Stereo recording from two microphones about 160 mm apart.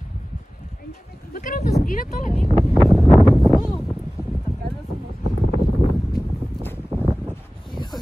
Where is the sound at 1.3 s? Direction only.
55° left (ahead or behind).